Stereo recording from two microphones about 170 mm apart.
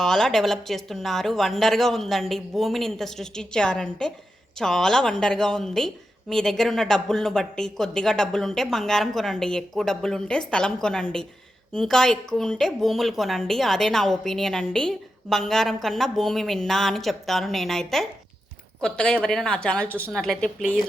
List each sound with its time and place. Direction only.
0.0 s a woman's voice: 5° left (ahead or behind)